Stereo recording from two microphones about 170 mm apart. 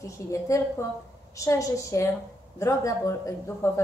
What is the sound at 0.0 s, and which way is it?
Speech, 15° left (ahead or behind).